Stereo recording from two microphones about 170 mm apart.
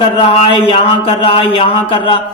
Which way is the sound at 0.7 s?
30° left (ahead or behind).